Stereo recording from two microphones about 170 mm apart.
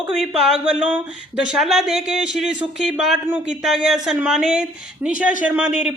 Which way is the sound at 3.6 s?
5° right (ahead or behind).